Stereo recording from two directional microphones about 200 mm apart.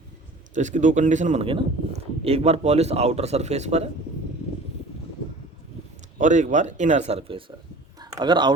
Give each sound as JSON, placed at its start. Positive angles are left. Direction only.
{"t": 0.5, "sound": "a man's voice", "side_deg": -40}
{"t": 6.1, "sound": "a man's voice", "side_deg": -40}
{"t": 7.9, "sound": "a sound", "side_deg": -20}